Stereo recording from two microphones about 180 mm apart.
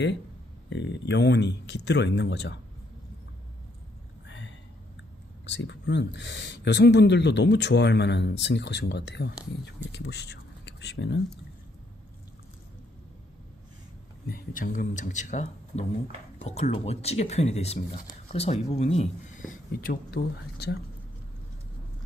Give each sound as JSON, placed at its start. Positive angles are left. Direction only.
{"t": 0.7, "sound": "speech", "side_deg": 75}
{"t": 4.3, "sound": "a sound", "side_deg": 90}
{"t": 5.4, "sound": "speech", "side_deg": 85}
{"t": 14.3, "sound": "speech", "side_deg": 50}